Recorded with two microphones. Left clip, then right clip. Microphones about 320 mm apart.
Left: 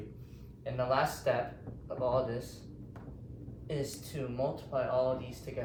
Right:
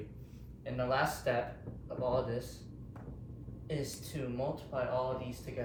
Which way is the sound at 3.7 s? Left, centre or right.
Centre.